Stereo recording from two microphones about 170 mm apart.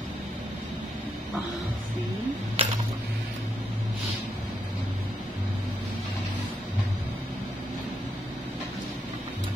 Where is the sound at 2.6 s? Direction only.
35° right (ahead or behind).